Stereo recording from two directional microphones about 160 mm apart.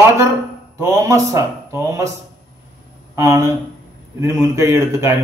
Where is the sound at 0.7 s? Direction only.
20° right (ahead or behind).